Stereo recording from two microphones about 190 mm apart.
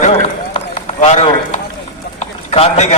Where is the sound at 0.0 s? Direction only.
30° left (ahead or behind).